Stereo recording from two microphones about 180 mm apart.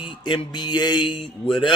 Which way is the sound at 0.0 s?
25° left (ahead or behind).